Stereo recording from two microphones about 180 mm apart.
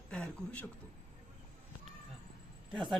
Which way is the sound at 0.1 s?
10° left (ahead or behind).